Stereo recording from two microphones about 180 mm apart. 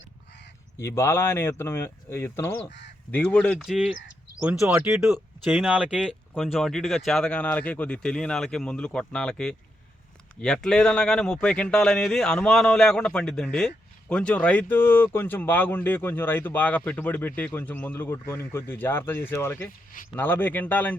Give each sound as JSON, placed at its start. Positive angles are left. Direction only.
{"t": 0.8, "sound": "a man's voice", "side_deg": 15}
{"t": 4.6, "sound": "speech", "side_deg": -15}
{"t": 4.9, "sound": "a man's voice", "side_deg": 0}